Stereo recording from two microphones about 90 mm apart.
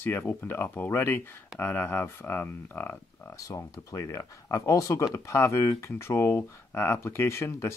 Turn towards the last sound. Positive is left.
turn(degrees=30)  # may be behind; listen again after turning